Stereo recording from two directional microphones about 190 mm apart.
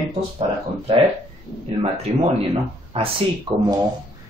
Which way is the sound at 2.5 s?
30° right (ahead or behind).